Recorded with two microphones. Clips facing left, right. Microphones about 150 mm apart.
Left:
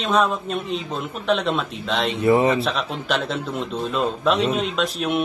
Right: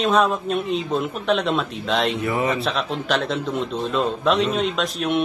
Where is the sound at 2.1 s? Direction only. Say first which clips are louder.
Left 5 dB; 30° left (ahead or behind).